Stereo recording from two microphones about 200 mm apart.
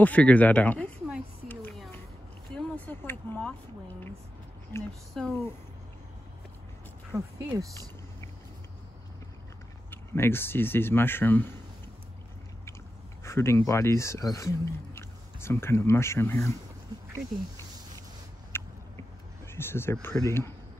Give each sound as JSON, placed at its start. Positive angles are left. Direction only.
{"t": 0.0, "sound": "speech", "side_deg": 5}
{"t": 1.5, "sound": "a sound", "side_deg": 5}
{"t": 4.7, "sound": "a sound", "side_deg": 10}
{"t": 5.1, "sound": "speech", "side_deg": 5}
{"t": 7.1, "sound": "speech", "side_deg": -15}
{"t": 9.8, "sound": "speech", "side_deg": 10}
{"t": 13.2, "sound": "speech", "side_deg": 15}
{"t": 18.5, "sound": "a sound", "side_deg": 10}
{"t": 19.4, "sound": "speech", "side_deg": 10}